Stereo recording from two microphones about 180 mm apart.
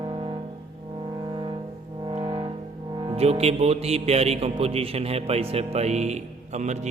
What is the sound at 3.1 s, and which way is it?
Speech, 35° right (ahead or behind).